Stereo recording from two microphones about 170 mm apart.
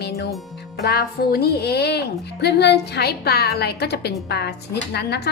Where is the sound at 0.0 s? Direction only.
75° left (ahead or behind).